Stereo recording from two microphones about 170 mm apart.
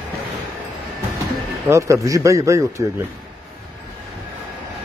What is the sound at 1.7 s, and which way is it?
Speech, 20° right (ahead or behind).